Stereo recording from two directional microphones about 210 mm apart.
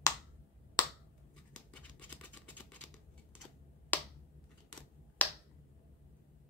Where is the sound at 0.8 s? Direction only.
20° left (ahead or behind).